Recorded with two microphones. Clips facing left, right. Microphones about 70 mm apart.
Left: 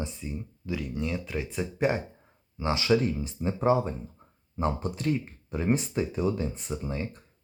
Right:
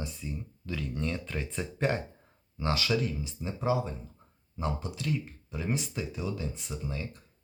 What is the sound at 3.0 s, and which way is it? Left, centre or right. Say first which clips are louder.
Speech: left 5 dB; left.